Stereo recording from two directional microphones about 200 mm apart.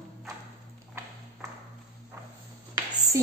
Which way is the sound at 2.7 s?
20° right (ahead or behind).